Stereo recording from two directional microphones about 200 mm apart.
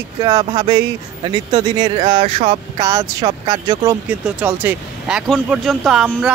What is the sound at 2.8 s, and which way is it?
Speech, 15° right (ahead or behind).